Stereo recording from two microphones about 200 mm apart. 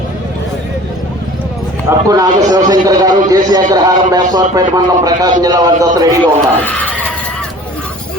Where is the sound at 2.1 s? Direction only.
20° right (ahead or behind).